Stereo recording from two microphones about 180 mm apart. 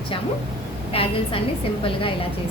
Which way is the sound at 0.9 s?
30° left (ahead or behind).